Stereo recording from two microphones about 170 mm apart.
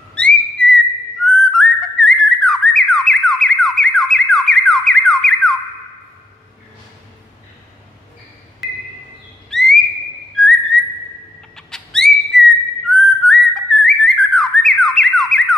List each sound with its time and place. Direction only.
0.1 s whistling: 5° left (ahead or behind)
9.5 s whistle: 5° left (ahead or behind)
10.3 s whistling: centre (ahead or behind)